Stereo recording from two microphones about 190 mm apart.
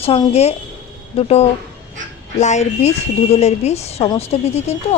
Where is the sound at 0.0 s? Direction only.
30° left (ahead or behind).